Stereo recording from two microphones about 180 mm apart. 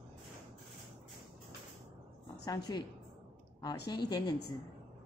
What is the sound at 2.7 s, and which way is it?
Speech, 20° left (ahead or behind).